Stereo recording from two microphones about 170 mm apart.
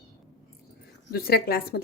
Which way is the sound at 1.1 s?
65° left (ahead or behind).